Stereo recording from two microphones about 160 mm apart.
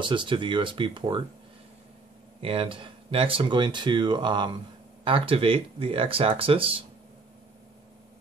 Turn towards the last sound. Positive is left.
turn(degrees=-35)  # may be behind; listen again after turning